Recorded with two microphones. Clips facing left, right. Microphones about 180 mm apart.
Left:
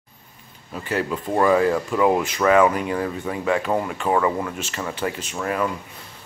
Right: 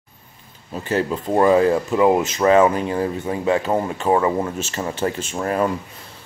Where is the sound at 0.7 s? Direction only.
25° right (ahead or behind).